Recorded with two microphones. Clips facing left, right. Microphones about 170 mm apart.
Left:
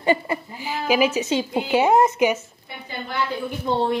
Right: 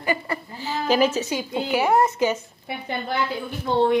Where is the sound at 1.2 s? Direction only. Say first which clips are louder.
Left 3 dB; 25° left (ahead or behind).